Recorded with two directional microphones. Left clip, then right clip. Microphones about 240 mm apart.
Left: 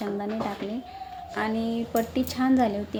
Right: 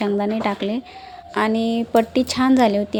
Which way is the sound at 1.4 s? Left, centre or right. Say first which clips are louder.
Right 9 dB; right.